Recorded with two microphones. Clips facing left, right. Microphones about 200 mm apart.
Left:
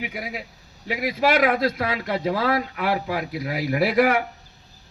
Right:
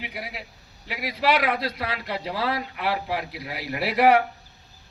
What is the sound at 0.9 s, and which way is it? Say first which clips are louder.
A man's voice: left 3 dB; 50° left (ahead or behind).